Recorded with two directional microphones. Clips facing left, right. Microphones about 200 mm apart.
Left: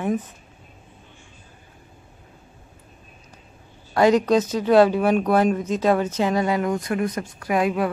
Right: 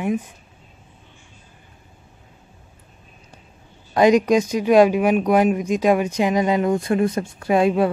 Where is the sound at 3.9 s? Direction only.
15° right (ahead or behind).